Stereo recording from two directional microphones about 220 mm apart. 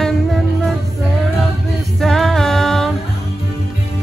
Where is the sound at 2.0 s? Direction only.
Centre (ahead or behind).